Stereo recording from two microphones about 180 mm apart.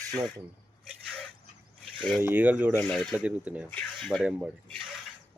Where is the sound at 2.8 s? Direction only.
5° left (ahead or behind).